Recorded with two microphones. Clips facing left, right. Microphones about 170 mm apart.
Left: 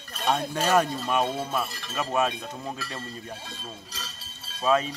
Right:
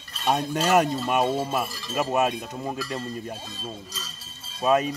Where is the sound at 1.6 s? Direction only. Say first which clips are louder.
Right 3 dB; 60° left (ahead or behind).